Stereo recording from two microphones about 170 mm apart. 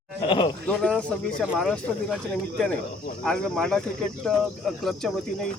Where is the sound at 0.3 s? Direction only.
30° left (ahead or behind).